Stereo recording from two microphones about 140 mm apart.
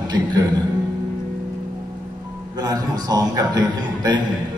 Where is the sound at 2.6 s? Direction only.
30° right (ahead or behind).